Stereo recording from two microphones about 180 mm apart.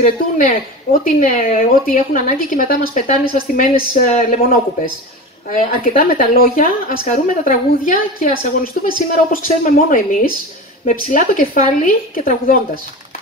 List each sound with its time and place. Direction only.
0.0 s a woman's voice: 50° left (ahead or behind)